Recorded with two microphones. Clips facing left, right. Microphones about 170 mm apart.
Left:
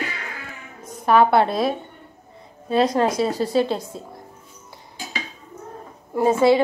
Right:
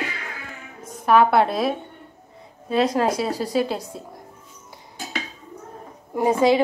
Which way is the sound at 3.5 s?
5° right (ahead or behind).